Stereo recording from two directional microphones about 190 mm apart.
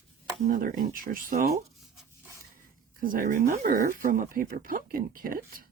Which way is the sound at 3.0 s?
45° right (ahead or behind).